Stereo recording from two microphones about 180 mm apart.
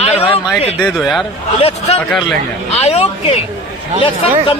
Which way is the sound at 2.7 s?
35° left (ahead or behind).